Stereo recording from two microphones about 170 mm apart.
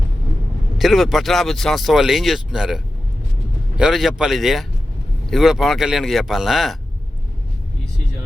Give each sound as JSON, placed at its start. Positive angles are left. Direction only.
{"t": 0.8, "sound": "speech", "side_deg": 0}